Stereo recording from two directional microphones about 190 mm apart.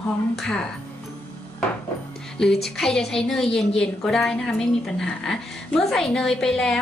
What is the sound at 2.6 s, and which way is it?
A woman's voice, centre (ahead or behind).